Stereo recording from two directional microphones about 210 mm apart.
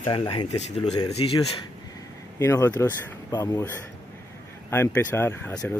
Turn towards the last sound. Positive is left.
turn(degrees=10)  # may be behind; listen again after turning